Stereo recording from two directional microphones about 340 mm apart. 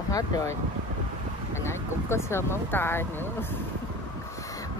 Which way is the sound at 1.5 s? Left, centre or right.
Centre.